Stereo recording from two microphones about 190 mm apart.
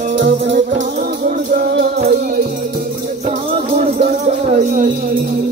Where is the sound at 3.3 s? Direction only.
40° right (ahead or behind).